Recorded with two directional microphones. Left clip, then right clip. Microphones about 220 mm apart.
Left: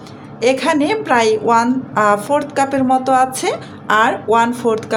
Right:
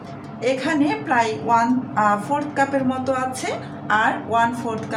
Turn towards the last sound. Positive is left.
turn(degrees=45)  # may be behind; listen again after turning